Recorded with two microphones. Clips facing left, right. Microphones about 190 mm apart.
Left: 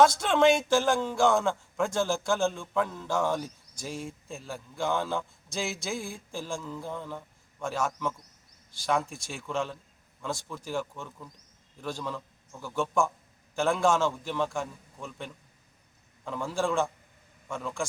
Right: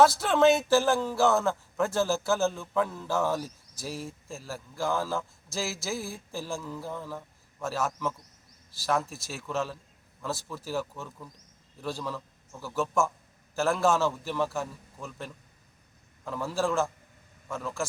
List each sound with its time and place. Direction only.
0.0 s a man's voice: 5° right (ahead or behind)